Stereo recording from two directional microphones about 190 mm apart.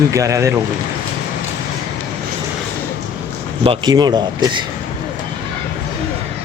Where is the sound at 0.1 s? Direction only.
15° right (ahead or behind).